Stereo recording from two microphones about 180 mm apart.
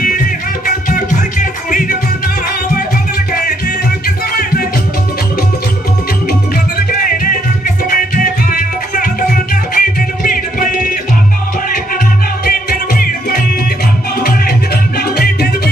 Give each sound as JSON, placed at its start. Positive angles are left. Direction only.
{"t": 0.8, "sound": "music", "side_deg": 50}
{"t": 7.0, "sound": "music", "side_deg": 50}
{"t": 12.4, "sound": "music", "side_deg": 55}
{"t": 15.0, "sound": "music", "side_deg": 60}